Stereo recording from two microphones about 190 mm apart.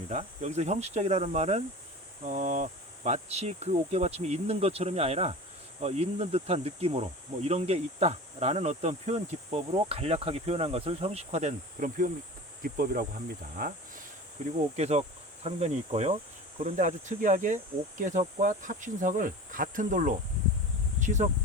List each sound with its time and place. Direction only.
0.1 s speech: 35° right (ahead or behind)
14.8 s speech: 35° right (ahead or behind)